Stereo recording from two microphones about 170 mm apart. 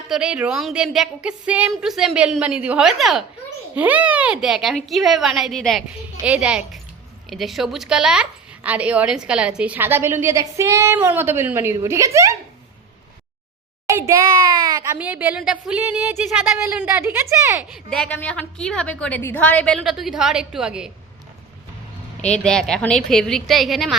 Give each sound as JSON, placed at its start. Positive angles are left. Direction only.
{"t": 0.1, "sound": "a woman's voice", "side_deg": -5}
{"t": 14.1, "sound": "speech", "side_deg": -20}
{"t": 14.9, "sound": "a woman's voice", "side_deg": -10}
{"t": 17.6, "sound": "a woman's voice", "side_deg": 0}
{"t": 22.3, "sound": "a woman's voice", "side_deg": 5}